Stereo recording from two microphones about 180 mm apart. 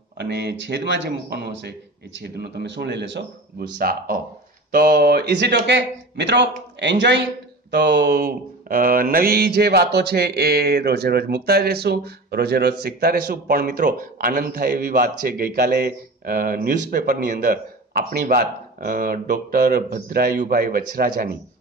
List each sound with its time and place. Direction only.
0.2 s speech: 65° right (ahead or behind)
7.7 s mantra: 70° right (ahead or behind)